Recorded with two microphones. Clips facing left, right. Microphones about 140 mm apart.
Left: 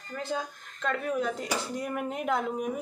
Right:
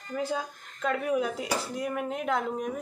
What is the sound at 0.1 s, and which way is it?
Speech, 10° right (ahead or behind).